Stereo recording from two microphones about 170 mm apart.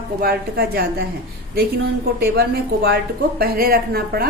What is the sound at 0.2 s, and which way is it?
Speech, 65° right (ahead or behind).